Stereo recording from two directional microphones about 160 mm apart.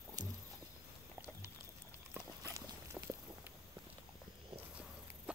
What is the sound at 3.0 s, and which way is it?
Walk, centre (ahead or behind).